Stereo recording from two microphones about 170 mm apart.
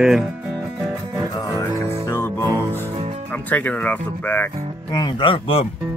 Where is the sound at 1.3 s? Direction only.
20° left (ahead or behind).